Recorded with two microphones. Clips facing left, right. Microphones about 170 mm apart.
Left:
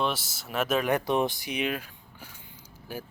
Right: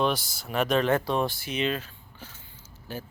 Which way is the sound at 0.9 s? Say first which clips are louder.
Even; 20° left (ahead or behind).